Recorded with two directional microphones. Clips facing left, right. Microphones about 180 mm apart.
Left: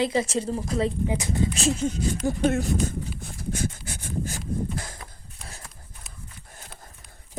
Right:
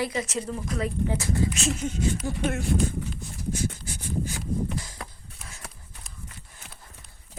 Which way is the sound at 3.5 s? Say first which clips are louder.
Left 1 dB; 55° left (ahead or behind).